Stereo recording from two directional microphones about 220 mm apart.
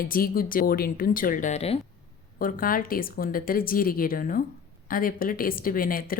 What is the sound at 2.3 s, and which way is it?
Speech, 40° left (ahead or behind).